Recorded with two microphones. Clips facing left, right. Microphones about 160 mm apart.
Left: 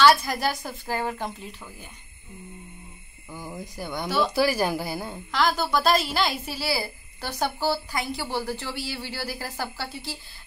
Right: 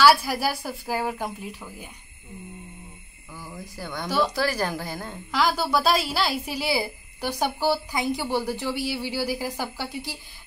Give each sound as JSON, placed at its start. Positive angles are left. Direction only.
{"t": 0.0, "sound": "a woman's voice", "side_deg": -10}
{"t": 3.3, "sound": "speech", "side_deg": 20}
{"t": 5.3, "sound": "a woman's voice", "side_deg": -5}